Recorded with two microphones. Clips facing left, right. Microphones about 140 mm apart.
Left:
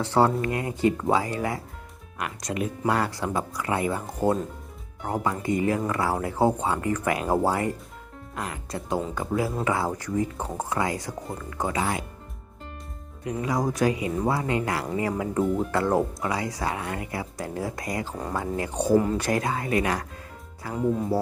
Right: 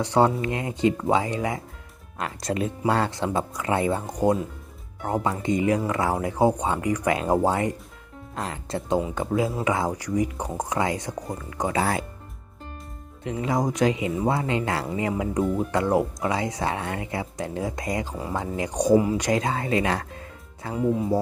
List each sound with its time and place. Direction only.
0.0 s speech: 15° right (ahead or behind)
11.7 s speech: 35° right (ahead or behind)
13.2 s speech: 25° right (ahead or behind)
20.7 s speech: 5° right (ahead or behind)